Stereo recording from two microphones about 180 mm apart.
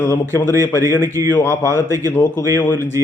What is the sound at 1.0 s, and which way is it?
Speech, 20° right (ahead or behind).